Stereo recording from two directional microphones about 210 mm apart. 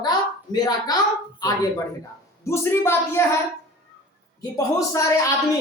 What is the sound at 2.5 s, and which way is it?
Speech, 10° left (ahead or behind).